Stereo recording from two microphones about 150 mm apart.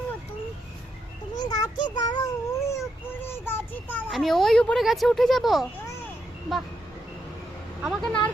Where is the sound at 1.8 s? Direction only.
30° left (ahead or behind).